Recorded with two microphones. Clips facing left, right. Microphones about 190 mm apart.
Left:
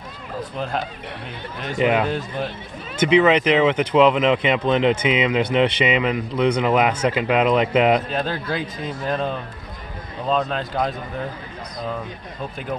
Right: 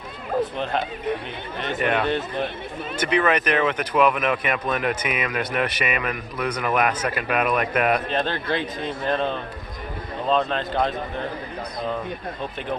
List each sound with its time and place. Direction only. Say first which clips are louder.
1.8 s speech: left 4 dB; 10° left (ahead or behind)
3.2 s speech: left 5 dB; 15° left (ahead or behind)
8.1 s speech: even; 5° left (ahead or behind)